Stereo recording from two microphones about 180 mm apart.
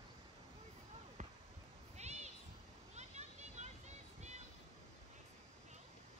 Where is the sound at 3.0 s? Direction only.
40° right (ahead or behind).